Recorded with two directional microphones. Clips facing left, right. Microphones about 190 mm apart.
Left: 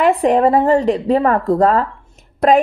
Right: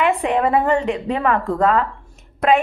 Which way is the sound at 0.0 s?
35° left (ahead or behind).